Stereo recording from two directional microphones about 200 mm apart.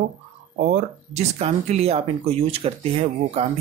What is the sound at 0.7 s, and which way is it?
Speech, 35° right (ahead or behind).